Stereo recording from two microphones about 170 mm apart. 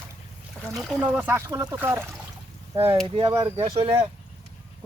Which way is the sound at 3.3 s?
20° right (ahead or behind).